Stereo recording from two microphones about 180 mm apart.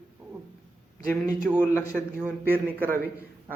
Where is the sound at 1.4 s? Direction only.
5° right (ahead or behind).